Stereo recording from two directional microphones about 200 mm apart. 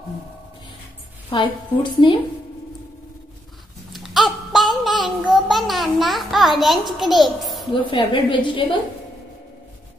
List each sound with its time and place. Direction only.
1.3 s a woman's voice: 25° left (ahead or behind)
3.9 s a sound: centre (ahead or behind)
6.6 s a child's voice: centre (ahead or behind)
7.7 s a woman's voice: 25° left (ahead or behind)